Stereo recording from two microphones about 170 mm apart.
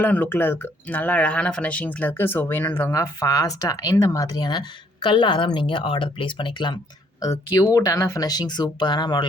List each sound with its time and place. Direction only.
0.0 s speech: 10° left (ahead or behind); by 9.2 s 25° left (ahead or behind)